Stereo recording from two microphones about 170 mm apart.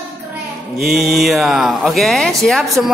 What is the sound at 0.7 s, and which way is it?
Speech, centre (ahead or behind).